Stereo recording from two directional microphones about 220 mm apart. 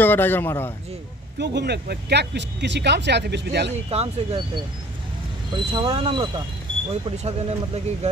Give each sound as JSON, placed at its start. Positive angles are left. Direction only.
{"t": 0.0, "sound": "a man's voice", "side_deg": 10}
{"t": 1.4, "sound": "speech", "side_deg": -50}
{"t": 3.9, "sound": "speech", "side_deg": -30}
{"t": 5.5, "sound": "speech", "side_deg": -20}